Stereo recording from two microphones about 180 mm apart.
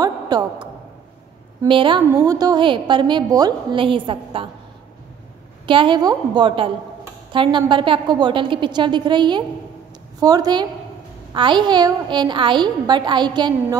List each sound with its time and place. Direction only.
0.0 s a sound: 25° right (ahead or behind)
1.7 s a woman's voice: 30° right (ahead or behind)
5.7 s a woman's voice: 30° right (ahead or behind)